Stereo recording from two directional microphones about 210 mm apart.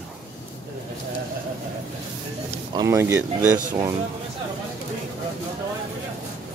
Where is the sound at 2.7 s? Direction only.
15° right (ahead or behind).